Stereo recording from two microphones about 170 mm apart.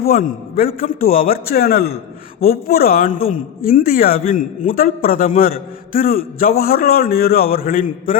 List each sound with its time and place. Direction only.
0.0 s a man's voice: 60° left (ahead or behind)